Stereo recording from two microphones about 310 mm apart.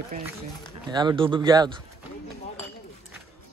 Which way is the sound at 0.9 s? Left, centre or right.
Centre.